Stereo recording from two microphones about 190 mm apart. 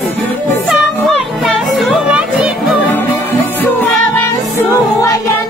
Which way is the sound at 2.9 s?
10° left (ahead or behind).